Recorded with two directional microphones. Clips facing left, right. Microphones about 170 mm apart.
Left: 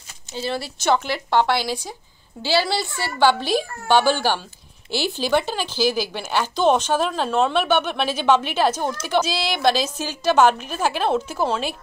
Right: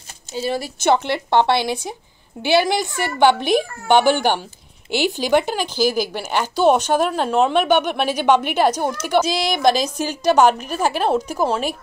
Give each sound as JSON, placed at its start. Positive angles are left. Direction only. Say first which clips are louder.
{"t": 0.3, "sound": "a woman's voice", "louder": "right 3 dB", "side_deg": -15}